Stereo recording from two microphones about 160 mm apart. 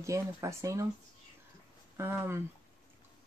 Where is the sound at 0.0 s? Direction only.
20° right (ahead or behind).